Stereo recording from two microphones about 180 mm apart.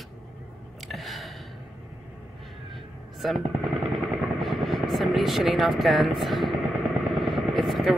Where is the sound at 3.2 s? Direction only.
Centre (ahead or behind).